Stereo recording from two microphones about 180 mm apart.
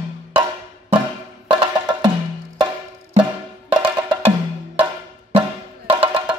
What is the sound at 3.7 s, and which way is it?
Wood block, 30° right (ahead or behind).